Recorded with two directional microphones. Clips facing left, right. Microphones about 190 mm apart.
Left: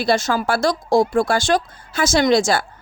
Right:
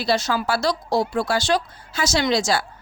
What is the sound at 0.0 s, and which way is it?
Speech, 50° left (ahead or behind).